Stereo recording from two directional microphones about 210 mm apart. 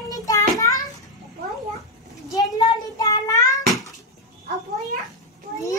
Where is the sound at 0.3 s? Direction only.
15° left (ahead or behind).